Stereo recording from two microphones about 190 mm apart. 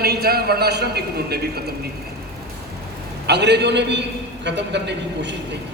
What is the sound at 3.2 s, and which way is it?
A man's voice, 65° right (ahead or behind).